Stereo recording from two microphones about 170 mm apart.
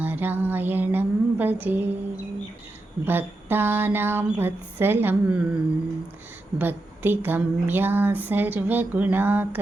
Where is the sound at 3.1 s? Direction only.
10° right (ahead or behind).